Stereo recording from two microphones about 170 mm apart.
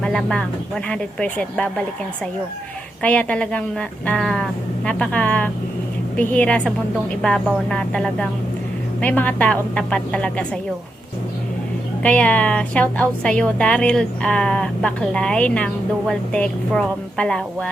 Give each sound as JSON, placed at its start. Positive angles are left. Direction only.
{"t": 0.0, "sound": "a woman's voice", "side_deg": 5}
{"t": 3.0, "sound": "a woman's voice", "side_deg": 10}
{"t": 12.0, "sound": "a woman's voice", "side_deg": 5}